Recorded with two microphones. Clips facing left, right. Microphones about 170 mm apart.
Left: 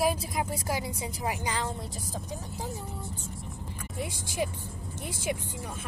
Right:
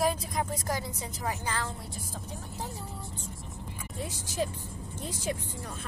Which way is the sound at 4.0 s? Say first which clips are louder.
Left 1 dB; 15° left (ahead or behind).